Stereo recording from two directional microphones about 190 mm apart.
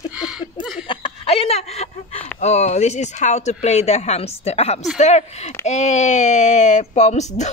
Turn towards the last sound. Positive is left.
turn(degrees=35)  # may be behind; listen again after turning